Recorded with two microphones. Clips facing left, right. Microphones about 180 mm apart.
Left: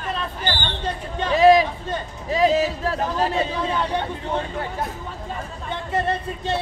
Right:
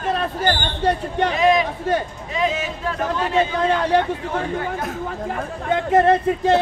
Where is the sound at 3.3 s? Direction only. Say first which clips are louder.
Right 5 dB; 90° right.